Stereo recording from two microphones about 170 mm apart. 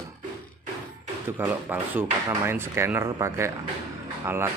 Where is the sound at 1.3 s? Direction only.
10° right (ahead or behind).